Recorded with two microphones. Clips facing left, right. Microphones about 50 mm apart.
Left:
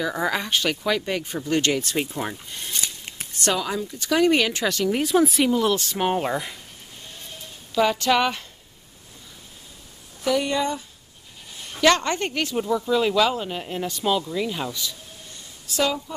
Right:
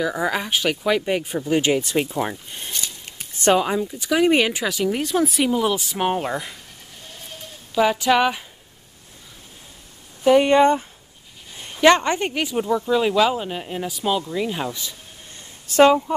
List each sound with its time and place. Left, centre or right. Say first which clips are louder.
0.0 s speech: right 2 dB; centre
2.7 s scissors: left 1 dB; centre
3.3 s speech: right 6 dB; right
3.8 s speech: right 1 dB; centre
7.7 s speech: right 2 dB; centre
10.2 s speech: right 9 dB; right
11.6 s speech: right 4 dB; right
15.6 s speech: right 10 dB; right